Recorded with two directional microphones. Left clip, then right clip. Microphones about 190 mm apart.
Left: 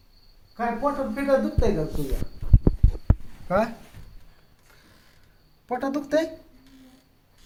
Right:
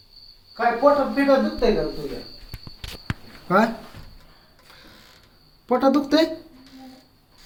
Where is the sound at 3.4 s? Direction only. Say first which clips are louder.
Right 4 dB; centre (ahead or behind).